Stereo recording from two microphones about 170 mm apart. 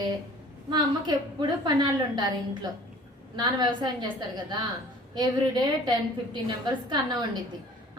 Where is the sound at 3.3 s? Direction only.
25° right (ahead or behind).